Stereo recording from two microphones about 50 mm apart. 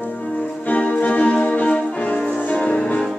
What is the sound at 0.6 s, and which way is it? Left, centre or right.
Music, left.